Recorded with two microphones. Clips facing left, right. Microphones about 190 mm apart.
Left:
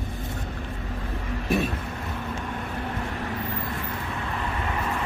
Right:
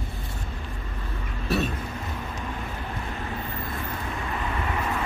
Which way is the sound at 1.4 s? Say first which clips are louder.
Left 1 dB; 15° left (ahead or behind).